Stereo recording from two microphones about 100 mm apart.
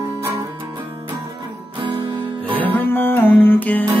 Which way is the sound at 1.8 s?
60° right (ahead or behind).